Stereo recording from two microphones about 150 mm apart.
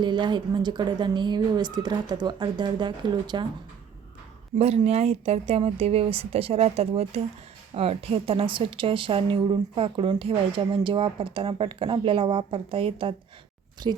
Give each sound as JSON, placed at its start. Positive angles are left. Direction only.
{"t": 0.0, "sound": "speech", "side_deg": -30}
{"t": 4.5, "sound": "a woman's voice", "side_deg": -45}